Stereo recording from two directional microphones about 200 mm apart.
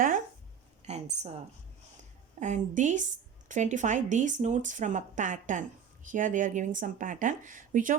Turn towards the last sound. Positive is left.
turn(degrees=-40)  # may be behind; listen again after turning